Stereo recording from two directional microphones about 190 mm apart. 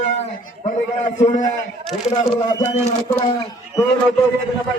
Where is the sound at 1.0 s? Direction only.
40° left (ahead or behind).